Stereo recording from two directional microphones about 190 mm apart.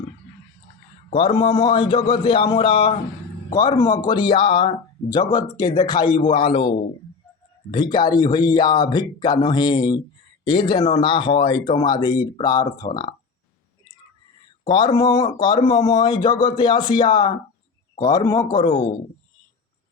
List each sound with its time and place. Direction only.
1.1 s speech: 25° left (ahead or behind)
14.6 s speech: 20° left (ahead or behind)